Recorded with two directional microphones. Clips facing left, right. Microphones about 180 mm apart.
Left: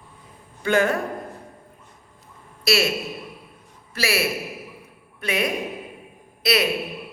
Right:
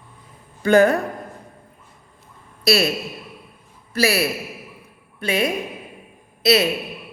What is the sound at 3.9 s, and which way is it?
Speech, 40° right (ahead or behind).